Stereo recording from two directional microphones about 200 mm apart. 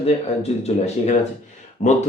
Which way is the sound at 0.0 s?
30° left (ahead or behind).